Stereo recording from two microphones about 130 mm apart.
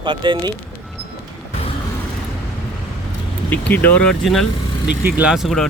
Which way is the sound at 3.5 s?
15° left (ahead or behind).